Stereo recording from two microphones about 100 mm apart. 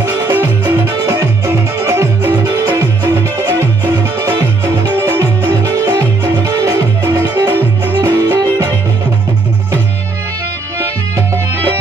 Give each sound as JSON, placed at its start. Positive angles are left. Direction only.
{"t": 0.0, "sound": "music", "side_deg": -20}